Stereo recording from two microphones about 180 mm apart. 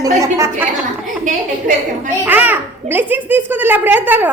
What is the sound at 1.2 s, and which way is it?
Speech, 45° right (ahead or behind).